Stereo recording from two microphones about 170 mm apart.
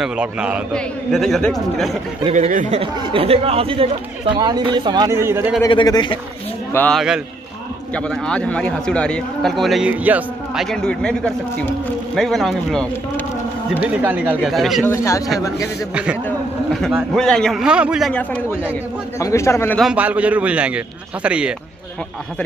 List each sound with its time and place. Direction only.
0.0 s a man's voice: 5° right (ahead or behind)
2.2 s speech: 40° right (ahead or behind)
2.8 s speech: 30° right (ahead or behind); by 5.5 s 15° right (ahead or behind)
5.7 s speech: 25° left (ahead or behind)
6.7 s a man's voice: 10° left (ahead or behind)
13.8 s a man's voice: 10° right (ahead or behind)
14.9 s speech: 15° left (ahead or behind)
15.9 s a man's voice: 5° right (ahead or behind)
17.1 s a man's voice: 5° left (ahead or behind)
18.1 s speech: 10° left (ahead or behind)
19.8 s a man's voice: 5° right (ahead or behind)